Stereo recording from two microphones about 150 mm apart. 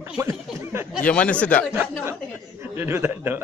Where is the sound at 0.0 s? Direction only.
15° right (ahead or behind).